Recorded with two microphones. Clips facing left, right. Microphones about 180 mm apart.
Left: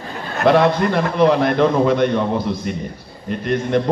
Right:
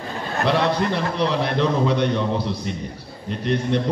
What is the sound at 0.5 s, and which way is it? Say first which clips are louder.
A man's voice: left 7 dB; 50° left (ahead or behind).